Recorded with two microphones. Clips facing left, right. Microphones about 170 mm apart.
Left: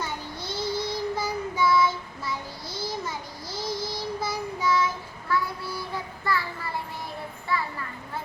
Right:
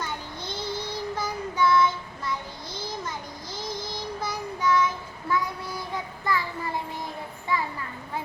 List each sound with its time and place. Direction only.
0.0 s child singing: 10° left (ahead or behind)
4.2 s child singing: 10° left (ahead or behind)
5.3 s child singing: 20° right (ahead or behind)